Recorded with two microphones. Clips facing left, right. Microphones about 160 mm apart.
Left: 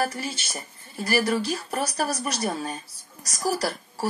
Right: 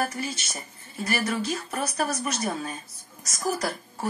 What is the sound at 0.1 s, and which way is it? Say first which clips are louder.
A woman's voice: even; 30° left (ahead or behind).